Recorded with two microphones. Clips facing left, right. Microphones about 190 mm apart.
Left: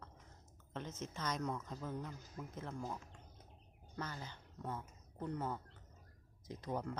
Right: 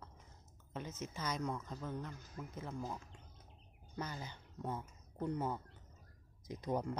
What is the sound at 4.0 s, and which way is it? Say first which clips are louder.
Speech: right 2 dB; 15° right (ahead or behind).